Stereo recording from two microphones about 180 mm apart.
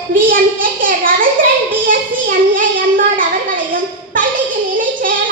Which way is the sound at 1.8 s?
50° right (ahead or behind).